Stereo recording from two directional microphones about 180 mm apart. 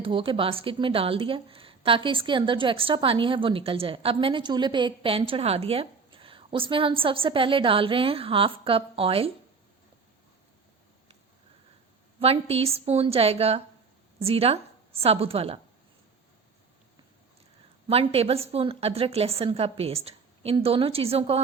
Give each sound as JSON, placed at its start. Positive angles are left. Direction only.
{"t": 0.0, "sound": "a woman's voice", "side_deg": -30}
{"t": 12.2, "sound": "a woman's voice", "side_deg": -35}
{"t": 17.8, "sound": "a woman's voice", "side_deg": -35}